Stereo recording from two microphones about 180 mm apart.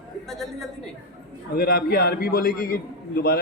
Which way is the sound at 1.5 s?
60° left (ahead or behind).